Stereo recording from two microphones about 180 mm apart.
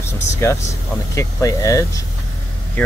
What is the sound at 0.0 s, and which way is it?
Vehicle, 15° left (ahead or behind).